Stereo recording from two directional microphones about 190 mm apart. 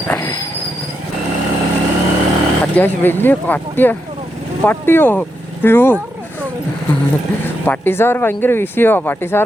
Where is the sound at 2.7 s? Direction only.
10° left (ahead or behind).